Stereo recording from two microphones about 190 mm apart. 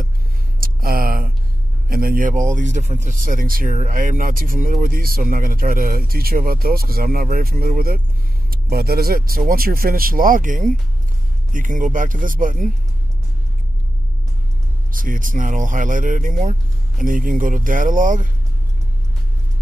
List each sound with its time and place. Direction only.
0.6 s a sound: 50° right (ahead or behind)
1.9 s speech: 50° right (ahead or behind)
14.9 s speech: 45° right (ahead or behind)